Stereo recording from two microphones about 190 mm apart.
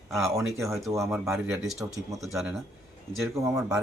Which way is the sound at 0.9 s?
15° right (ahead or behind).